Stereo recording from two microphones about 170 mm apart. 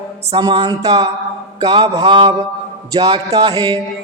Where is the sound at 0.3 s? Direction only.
25° right (ahead or behind).